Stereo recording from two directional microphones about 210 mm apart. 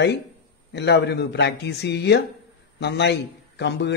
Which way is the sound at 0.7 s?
55° left (ahead or behind).